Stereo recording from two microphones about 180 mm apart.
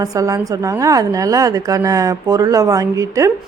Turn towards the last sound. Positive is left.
turn(degrees=-20)  # may be behind; listen again after turning